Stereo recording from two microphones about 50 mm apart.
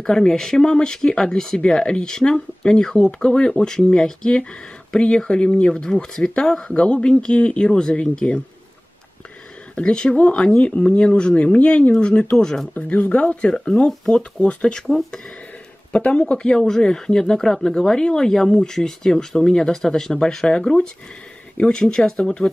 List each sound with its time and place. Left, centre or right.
0.0 s speech: centre
9.8 s speech: left
12.7 s speech: left; by 15.0 s centre
15.9 s speech: left
16.4 s speech: centre